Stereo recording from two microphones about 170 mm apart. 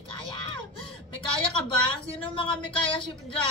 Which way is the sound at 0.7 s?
30° left (ahead or behind).